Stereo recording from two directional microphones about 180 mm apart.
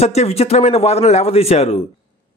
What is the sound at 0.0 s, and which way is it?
Speech, 35° left (ahead or behind).